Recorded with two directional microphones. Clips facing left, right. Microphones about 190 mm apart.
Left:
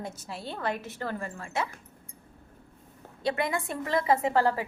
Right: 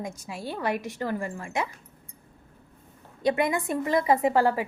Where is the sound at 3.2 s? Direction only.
15° right (ahead or behind).